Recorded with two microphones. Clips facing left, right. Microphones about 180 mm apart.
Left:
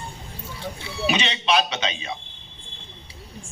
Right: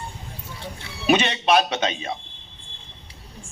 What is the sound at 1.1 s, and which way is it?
A man's voice, 50° right (ahead or behind).